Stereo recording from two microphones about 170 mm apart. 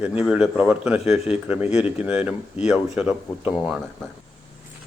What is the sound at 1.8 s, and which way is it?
Speech, 10° right (ahead or behind).